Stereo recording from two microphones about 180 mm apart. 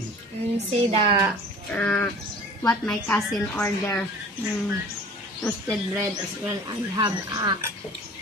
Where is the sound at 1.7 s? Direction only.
10° left (ahead or behind).